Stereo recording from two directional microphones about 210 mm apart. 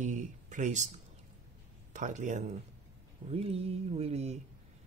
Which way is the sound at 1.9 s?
35° right (ahead or behind).